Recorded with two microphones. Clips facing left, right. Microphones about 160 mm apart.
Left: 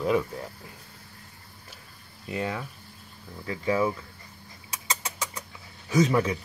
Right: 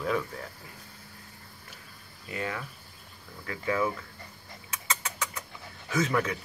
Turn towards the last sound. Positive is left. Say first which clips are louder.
# left 5 dB
turn(degrees=15)  # may be behind; listen again after turning